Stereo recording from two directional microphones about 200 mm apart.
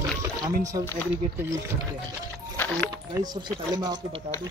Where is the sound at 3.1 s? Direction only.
20° right (ahead or behind).